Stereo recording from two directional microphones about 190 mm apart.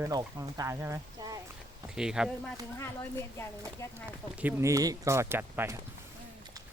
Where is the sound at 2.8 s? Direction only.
15° left (ahead or behind).